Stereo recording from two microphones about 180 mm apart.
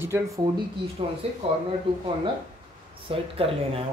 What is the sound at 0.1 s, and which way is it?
Speech, 10° right (ahead or behind).